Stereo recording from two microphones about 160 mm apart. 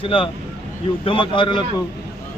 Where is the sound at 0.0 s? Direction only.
35° left (ahead or behind).